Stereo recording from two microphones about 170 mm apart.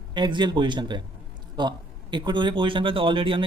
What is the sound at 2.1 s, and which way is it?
Speech, 25° right (ahead or behind).